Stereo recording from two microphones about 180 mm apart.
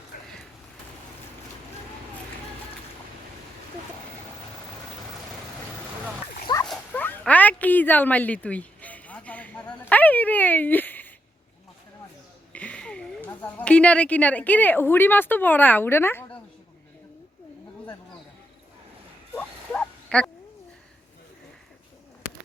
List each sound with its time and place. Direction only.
0.1 s a sound: 50° left (ahead or behind)
6.7 s dog: 10° left (ahead or behind)
12.5 s speech: 5° left (ahead or behind)
19.4 s bow-wow: 5° left (ahead or behind)